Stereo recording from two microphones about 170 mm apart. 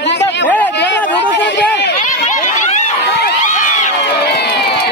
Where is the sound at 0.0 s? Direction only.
90° left.